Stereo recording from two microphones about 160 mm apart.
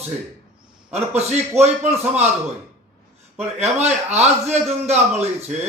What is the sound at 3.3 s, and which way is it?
A man's voice, 40° right (ahead or behind).